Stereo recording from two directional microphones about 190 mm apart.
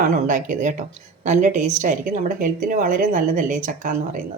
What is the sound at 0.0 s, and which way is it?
A woman's voice, 40° right (ahead or behind).